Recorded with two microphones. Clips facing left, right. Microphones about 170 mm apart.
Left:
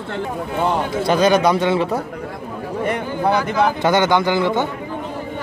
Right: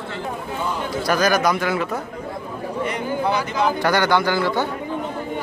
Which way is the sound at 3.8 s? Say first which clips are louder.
Left 2 dB; 20° left (ahead or behind).